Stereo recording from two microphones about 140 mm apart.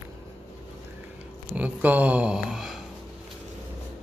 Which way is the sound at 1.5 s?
10° right (ahead or behind).